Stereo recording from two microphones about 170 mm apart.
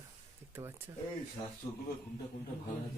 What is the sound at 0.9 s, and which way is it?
Speech, 25° right (ahead or behind).